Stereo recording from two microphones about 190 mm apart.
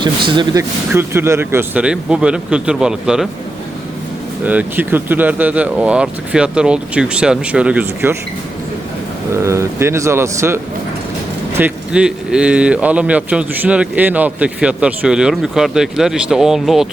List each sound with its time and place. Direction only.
0.0 s speech: 25° right (ahead or behind)
0.9 s a man's voice: 10° right (ahead or behind)
4.4 s speech: 10° right (ahead or behind)
9.3 s a man's voice: 15° right (ahead or behind)